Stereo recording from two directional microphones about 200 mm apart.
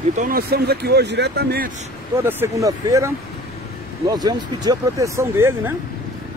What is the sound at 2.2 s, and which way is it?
Speech, 10° right (ahead or behind).